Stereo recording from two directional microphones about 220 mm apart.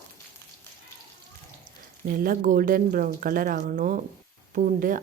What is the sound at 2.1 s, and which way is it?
A woman's voice, 40° right (ahead or behind).